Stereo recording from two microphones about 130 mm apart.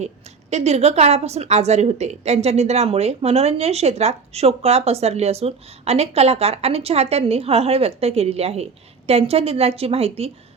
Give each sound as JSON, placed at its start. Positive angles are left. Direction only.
{"t": 0.5, "sound": "a woman's voice", "side_deg": -55}